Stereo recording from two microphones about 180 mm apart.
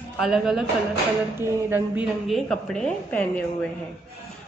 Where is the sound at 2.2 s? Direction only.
Centre (ahead or behind).